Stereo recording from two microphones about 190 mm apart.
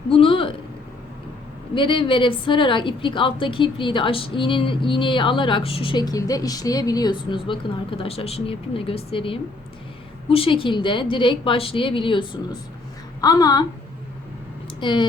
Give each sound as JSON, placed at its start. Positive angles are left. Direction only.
{"t": 0.1, "sound": "a sound", "side_deg": 30}
{"t": 1.7, "sound": "a woman's voice", "side_deg": 25}
{"t": 14.8, "sound": "speech", "side_deg": 25}